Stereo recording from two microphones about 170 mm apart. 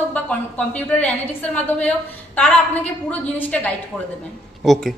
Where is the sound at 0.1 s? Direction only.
10° left (ahead or behind).